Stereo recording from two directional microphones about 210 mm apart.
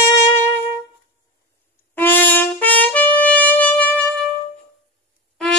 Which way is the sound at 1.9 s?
10° left (ahead or behind).